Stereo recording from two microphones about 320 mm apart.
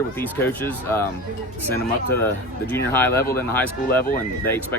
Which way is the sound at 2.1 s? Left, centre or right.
Centre.